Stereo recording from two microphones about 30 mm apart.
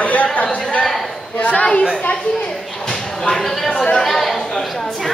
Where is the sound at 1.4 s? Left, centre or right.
Left.